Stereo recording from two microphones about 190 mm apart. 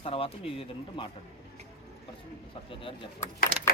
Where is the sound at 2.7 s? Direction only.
25° left (ahead or behind).